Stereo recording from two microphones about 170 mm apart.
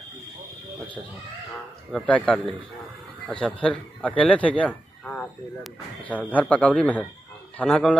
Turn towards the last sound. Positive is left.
turn(degrees=5)  # may be behind; listen again after turning